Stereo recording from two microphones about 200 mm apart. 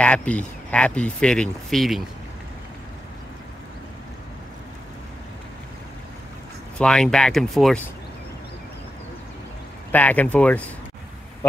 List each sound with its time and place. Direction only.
0.0 s speech: 5° left (ahead or behind)
6.8 s speech: 5° left (ahead or behind)
9.9 s speech: 10° left (ahead or behind)